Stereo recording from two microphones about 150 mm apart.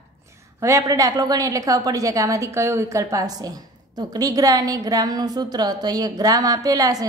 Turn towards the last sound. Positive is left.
turn(degrees=-25)  # may be behind; listen again after turning